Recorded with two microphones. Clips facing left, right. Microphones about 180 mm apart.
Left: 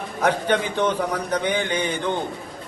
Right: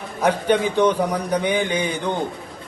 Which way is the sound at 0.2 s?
10° right (ahead or behind).